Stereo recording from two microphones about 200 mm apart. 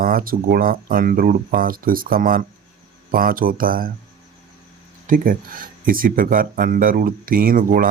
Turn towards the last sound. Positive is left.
turn(degrees=-45)  # may be behind; listen again after turning